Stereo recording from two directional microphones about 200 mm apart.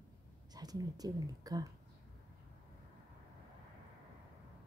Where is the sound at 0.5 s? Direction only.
20° right (ahead or behind).